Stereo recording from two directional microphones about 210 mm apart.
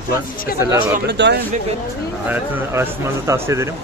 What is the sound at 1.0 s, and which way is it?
Speech, 55° right (ahead or behind).